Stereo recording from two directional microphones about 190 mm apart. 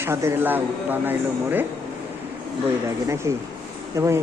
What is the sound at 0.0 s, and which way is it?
Speech, 15° right (ahead or behind).